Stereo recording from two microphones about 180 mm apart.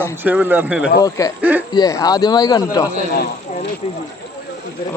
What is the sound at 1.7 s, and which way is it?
Speech, 20° left (ahead or behind).